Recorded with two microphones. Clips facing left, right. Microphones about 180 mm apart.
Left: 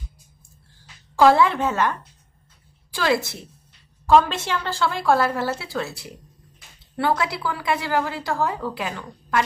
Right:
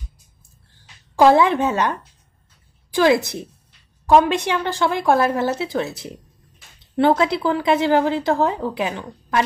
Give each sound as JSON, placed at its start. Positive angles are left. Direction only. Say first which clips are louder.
{"t": 1.1, "sound": "a woman's voice", "louder": "right 2 dB", "side_deg": -20}